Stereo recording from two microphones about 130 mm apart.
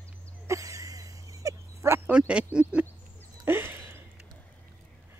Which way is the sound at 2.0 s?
10° right (ahead or behind).